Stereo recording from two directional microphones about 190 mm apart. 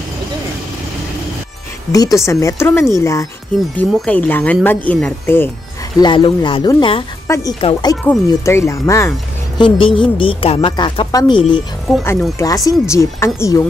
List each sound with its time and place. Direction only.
1.9 s speech: 15° left (ahead or behind)
5.9 s speech: 25° left (ahead or behind)
7.2 s a woman's voice: 15° left (ahead or behind)
9.6 s speech: 25° left (ahead or behind)
11.9 s speech: centre (ahead or behind)
12.4 s speech: 15° left (ahead or behind)